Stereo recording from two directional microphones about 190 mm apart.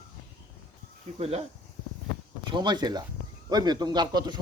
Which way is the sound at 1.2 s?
35° right (ahead or behind).